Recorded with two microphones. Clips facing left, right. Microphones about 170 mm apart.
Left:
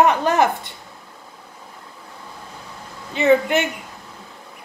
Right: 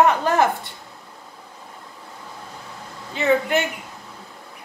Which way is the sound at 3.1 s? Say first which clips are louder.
Left 3 dB; 20° left (ahead or behind).